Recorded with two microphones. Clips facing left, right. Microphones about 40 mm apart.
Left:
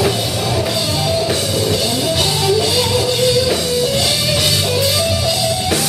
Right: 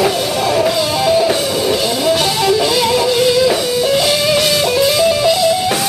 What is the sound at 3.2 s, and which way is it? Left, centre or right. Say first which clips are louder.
Music: right 3 dB; centre.